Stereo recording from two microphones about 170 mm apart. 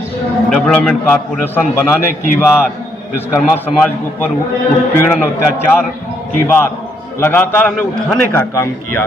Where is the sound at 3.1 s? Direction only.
10° left (ahead or behind).